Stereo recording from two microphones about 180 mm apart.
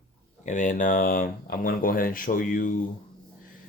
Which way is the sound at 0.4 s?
45° left (ahead or behind).